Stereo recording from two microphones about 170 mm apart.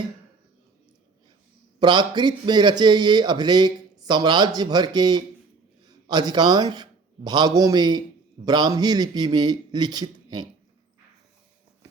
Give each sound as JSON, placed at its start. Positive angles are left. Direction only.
{"t": 1.8, "sound": "a man's voice", "side_deg": -25}